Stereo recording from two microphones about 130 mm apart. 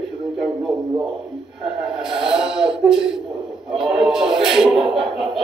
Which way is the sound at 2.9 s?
5° right (ahead or behind).